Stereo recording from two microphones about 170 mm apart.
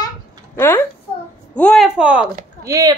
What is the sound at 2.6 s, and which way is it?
Speech, 20° right (ahead or behind).